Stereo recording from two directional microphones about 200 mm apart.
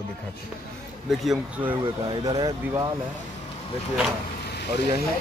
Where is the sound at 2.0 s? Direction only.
20° right (ahead or behind).